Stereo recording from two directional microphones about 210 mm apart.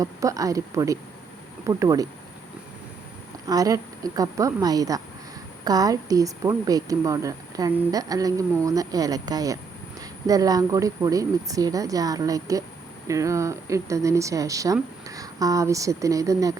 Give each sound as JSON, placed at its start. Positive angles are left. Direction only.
{"t": 0.0, "sound": "speech", "side_deg": -15}
{"t": 3.4, "sound": "speech", "side_deg": -15}